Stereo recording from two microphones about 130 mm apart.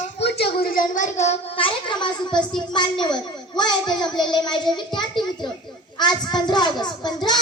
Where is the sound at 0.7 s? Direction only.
85° left.